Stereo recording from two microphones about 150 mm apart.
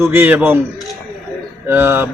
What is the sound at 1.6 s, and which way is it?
Speech, 15° right (ahead or behind).